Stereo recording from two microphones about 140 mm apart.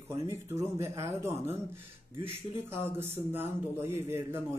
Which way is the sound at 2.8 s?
15° right (ahead or behind).